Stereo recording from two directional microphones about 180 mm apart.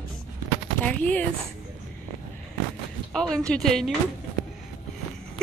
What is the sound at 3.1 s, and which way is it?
Speech, 5° left (ahead or behind).